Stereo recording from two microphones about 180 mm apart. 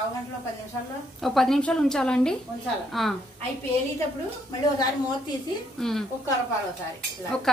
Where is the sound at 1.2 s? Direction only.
Centre (ahead or behind).